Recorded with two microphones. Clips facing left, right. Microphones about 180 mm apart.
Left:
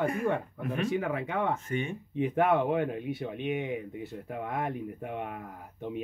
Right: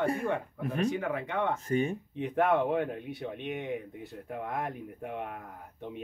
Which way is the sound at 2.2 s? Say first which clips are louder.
Left 1 dB; 5° left (ahead or behind).